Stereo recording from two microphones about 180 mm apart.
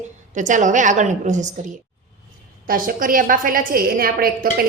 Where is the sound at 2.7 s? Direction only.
50° right (ahead or behind).